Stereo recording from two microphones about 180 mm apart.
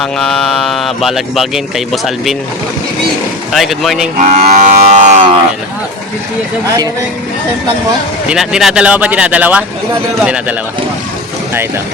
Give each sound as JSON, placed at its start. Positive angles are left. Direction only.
{"t": 0.0, "sound": "speech", "side_deg": 0}
{"t": 3.5, "sound": "speech", "side_deg": 0}
{"t": 4.2, "sound": "moo", "side_deg": -40}
{"t": 8.3, "sound": "speech", "side_deg": 0}